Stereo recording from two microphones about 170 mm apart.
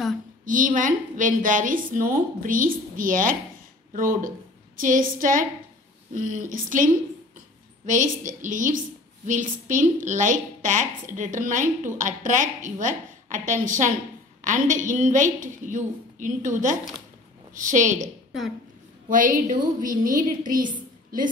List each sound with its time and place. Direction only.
0.5 s a woman's voice: 50° right (ahead or behind)